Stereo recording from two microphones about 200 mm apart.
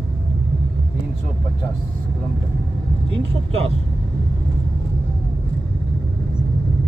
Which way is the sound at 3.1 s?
30° right (ahead or behind).